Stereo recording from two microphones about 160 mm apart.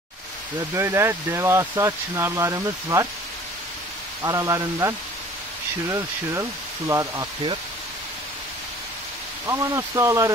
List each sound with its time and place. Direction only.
0.6 s speech: 15° right (ahead or behind)
4.2 s speech: 20° right (ahead or behind)
9.5 s speech: 20° right (ahead or behind)